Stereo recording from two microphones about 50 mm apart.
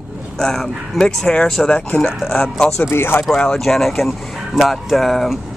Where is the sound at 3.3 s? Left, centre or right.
Centre.